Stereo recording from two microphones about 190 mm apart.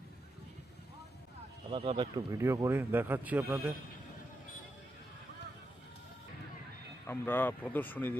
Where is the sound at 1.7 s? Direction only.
30° right (ahead or behind); by 3.6 s 10° right (ahead or behind).